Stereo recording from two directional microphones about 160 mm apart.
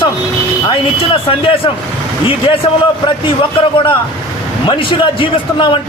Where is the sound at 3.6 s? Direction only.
35° left (ahead or behind).